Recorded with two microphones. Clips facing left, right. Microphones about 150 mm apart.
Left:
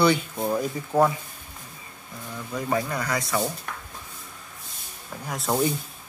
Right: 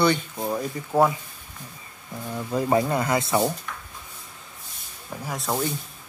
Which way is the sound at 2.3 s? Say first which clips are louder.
Right 5 dB; 30° right (ahead or behind).